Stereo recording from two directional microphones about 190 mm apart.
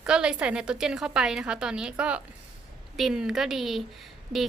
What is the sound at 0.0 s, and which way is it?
Speech, 5° right (ahead or behind).